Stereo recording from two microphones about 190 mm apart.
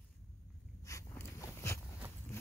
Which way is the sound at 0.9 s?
15° left (ahead or behind).